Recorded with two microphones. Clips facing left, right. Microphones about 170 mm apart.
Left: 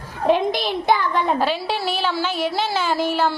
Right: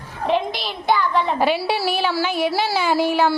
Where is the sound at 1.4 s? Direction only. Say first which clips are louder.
Right 2 dB; 10° right (ahead or behind).